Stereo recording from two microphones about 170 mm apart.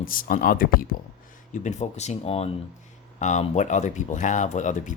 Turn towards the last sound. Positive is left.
turn(degrees=45)  # may be behind; listen again after turning